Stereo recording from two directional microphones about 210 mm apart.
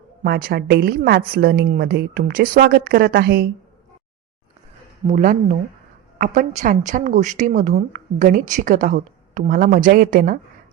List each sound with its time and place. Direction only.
0.2 s a woman's voice: 45° right (ahead or behind)
5.0 s a woman's voice: 40° right (ahead or behind)